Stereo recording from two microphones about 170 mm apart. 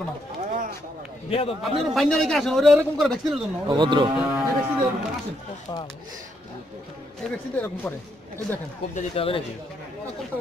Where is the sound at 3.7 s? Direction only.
25° right (ahead or behind).